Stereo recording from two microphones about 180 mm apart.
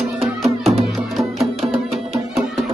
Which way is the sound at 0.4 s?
Centre (ahead or behind).